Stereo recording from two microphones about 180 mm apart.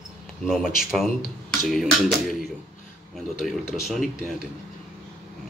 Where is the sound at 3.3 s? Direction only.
Centre (ahead or behind).